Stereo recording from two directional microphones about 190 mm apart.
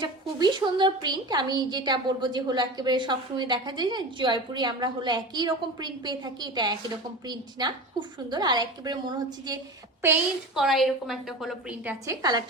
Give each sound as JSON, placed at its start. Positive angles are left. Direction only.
{"t": 0.0, "sound": "a woman's voice", "side_deg": -25}
{"t": 10.0, "sound": "a woman's voice", "side_deg": -5}